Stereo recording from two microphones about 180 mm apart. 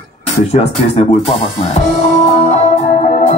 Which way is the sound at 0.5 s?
35° left (ahead or behind).